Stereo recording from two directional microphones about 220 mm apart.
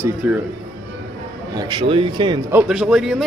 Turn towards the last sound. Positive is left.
turn(degrees=0)  # may be behind; listen again after turning